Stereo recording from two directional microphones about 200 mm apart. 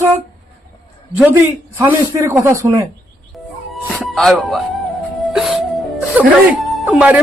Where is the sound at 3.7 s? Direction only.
Centre (ahead or behind).